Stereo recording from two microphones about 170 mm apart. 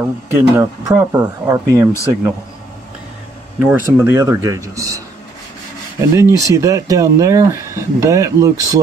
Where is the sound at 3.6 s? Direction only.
15° right (ahead or behind).